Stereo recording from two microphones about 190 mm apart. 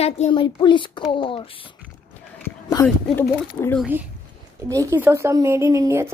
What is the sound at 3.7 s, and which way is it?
Speech, 5° right (ahead or behind).